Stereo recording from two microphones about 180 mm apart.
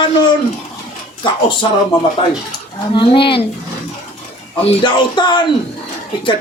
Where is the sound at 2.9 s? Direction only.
30° left (ahead or behind).